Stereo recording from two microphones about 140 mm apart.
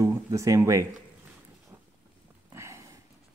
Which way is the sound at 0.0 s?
20° right (ahead or behind).